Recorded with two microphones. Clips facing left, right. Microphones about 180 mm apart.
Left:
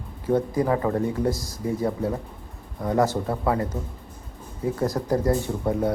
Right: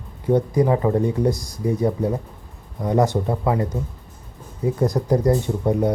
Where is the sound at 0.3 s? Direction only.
15° right (ahead or behind).